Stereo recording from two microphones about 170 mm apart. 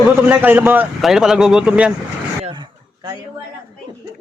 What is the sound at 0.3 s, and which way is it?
A man's voice, 10° right (ahead or behind).